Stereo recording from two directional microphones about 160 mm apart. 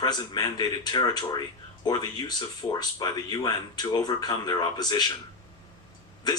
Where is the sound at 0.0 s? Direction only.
25° left (ahead or behind).